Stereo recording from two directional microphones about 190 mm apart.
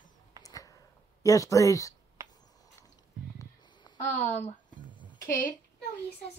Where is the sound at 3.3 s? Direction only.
25° left (ahead or behind).